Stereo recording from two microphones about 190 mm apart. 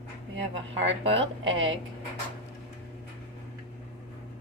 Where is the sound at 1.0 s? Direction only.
30° right (ahead or behind).